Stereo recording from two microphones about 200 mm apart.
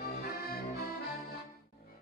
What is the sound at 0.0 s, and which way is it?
Accordion, 50° left (ahead or behind).